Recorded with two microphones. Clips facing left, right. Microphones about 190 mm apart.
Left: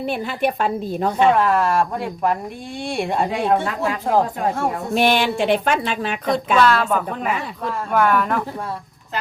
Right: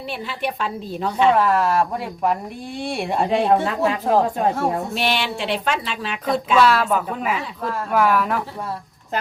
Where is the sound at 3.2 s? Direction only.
25° right (ahead or behind).